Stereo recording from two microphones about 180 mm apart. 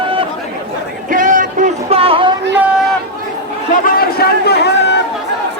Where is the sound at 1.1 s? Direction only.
50° right (ahead or behind); by 2.4 s 30° right (ahead or behind).